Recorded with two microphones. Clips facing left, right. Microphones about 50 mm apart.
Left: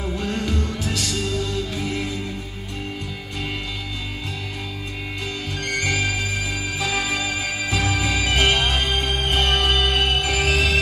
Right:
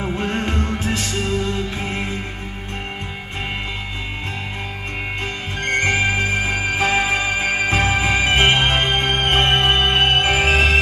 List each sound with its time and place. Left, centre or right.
0.0 s music: right
5.6 s music: right